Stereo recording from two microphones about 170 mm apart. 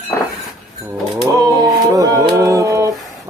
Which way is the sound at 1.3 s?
20° right (ahead or behind).